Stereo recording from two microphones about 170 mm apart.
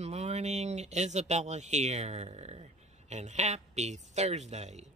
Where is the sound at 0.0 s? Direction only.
40° right (ahead or behind).